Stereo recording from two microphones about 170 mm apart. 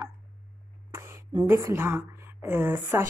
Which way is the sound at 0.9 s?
15° right (ahead or behind).